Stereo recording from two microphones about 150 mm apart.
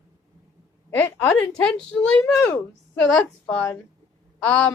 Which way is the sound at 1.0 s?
10° left (ahead or behind).